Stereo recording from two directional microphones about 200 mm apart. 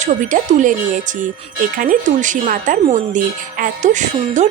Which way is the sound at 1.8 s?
40° right (ahead or behind).